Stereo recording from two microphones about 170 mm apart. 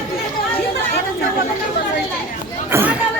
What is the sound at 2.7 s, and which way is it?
Chatter, 10° right (ahead or behind).